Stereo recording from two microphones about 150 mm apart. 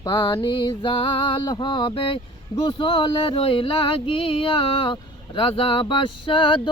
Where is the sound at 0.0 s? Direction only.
30° left (ahead or behind).